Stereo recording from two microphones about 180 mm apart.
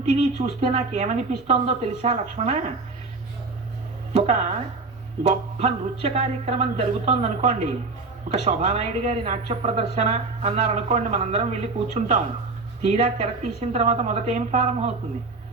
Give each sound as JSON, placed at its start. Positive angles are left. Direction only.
{"t": 0.0, "sound": "speech", "side_deg": -40}
{"t": 4.1, "sound": "speech", "side_deg": -40}
{"t": 5.5, "sound": "speech", "side_deg": -35}